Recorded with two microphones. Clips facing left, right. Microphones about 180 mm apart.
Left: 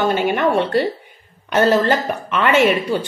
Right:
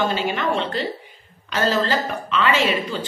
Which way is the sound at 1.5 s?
55° left (ahead or behind).